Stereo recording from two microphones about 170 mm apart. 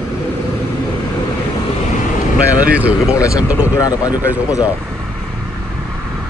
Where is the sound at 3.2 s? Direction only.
20° left (ahead or behind).